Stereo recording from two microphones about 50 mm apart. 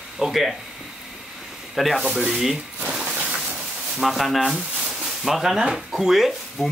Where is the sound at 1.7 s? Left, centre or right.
Centre.